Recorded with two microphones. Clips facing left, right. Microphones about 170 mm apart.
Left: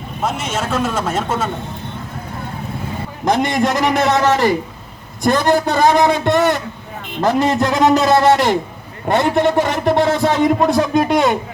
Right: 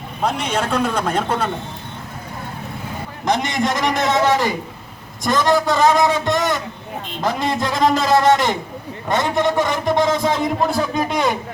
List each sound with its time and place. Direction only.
0.2 s a man's voice: 5° left (ahead or behind)
3.2 s a man's voice: 55° left (ahead or behind)